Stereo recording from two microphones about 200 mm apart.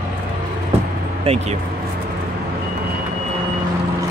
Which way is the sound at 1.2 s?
30° right (ahead or behind).